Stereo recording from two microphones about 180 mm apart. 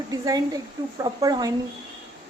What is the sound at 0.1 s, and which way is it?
Speech, 20° right (ahead or behind).